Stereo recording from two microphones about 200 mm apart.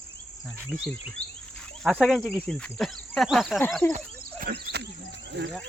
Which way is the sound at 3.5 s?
10° left (ahead or behind).